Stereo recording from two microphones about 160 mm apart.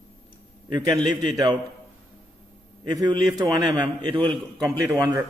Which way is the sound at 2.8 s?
25° right (ahead or behind).